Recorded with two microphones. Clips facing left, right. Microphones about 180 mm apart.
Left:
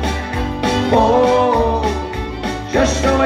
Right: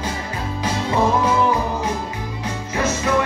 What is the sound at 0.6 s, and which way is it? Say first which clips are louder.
Music: left 7 dB; 70° left (ahead or behind).